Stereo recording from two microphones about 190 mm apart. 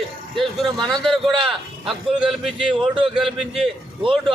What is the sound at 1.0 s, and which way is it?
A man's voice, centre (ahead or behind).